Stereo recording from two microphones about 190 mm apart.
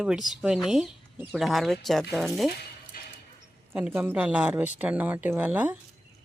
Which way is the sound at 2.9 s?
50° left (ahead or behind).